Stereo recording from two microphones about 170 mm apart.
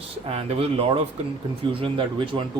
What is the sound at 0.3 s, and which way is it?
Speech, 35° right (ahead or behind).